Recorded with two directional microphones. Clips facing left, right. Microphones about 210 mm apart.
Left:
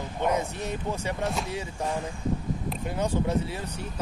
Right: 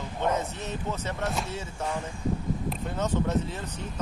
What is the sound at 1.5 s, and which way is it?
Speech, 15° left (ahead or behind).